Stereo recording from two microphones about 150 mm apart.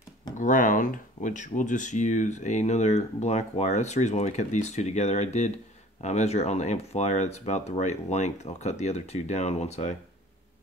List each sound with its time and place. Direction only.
0.4 s speech: 60° left (ahead or behind)